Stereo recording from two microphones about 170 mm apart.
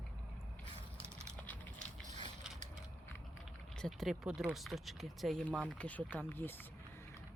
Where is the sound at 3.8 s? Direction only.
Centre (ahead or behind).